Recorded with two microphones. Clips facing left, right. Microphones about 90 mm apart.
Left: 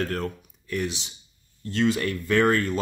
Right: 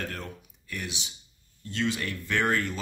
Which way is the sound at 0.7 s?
35° left (ahead or behind).